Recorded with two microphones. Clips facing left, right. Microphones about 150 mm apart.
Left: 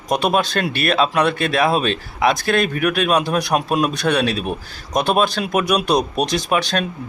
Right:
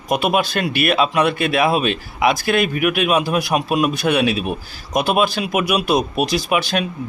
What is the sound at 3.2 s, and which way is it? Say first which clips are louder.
Speech: even; 5° right (ahead or behind).